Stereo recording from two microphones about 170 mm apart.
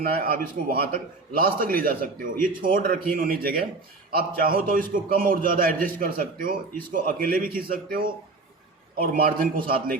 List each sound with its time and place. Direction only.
0.0 s a man's voice: 60° right (ahead or behind)
9.1 s a man's voice: 60° right (ahead or behind)